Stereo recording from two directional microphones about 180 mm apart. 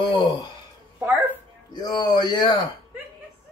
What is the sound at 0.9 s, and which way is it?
Dog, 10° right (ahead or behind).